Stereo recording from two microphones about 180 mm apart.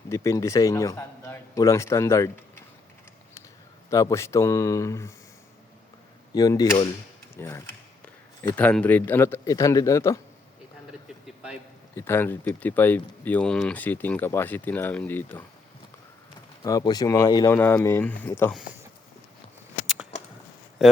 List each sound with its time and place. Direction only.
0.1 s a man's voice: 15° left (ahead or behind)
3.8 s speech: 15° left (ahead or behind)
6.3 s speech: 20° left (ahead or behind)
11.9 s speech: 15° left (ahead or behind)
16.6 s speech: 20° left (ahead or behind)
20.8 s speech: 5° right (ahead or behind)